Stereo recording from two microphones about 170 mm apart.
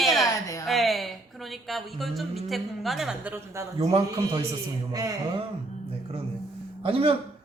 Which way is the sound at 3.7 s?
35° right (ahead or behind).